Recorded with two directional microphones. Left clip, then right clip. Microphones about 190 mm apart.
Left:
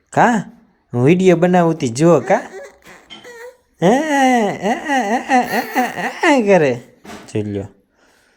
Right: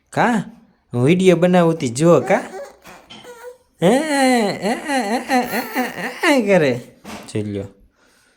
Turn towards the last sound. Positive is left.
turn(degrees=10)  # may be behind; listen again after turning